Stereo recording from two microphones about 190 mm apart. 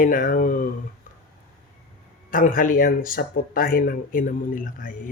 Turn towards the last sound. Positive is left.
turn(degrees=45)  # may be behind; listen again after turning